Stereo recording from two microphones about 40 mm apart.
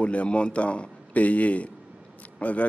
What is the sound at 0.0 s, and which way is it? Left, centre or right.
A man's voice, left.